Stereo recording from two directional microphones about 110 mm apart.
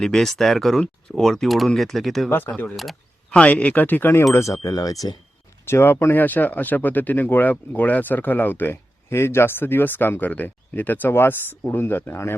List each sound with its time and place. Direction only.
0.0 s speech: 5° left (ahead or behind)
2.3 s speech: 15° left (ahead or behind); by 5.1 s 35° left (ahead or behind)
5.6 s speech: 20° left (ahead or behind)